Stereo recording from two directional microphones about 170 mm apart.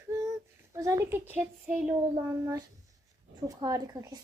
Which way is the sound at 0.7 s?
20° right (ahead or behind).